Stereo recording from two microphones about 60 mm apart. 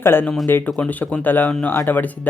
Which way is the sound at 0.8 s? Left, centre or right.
Left.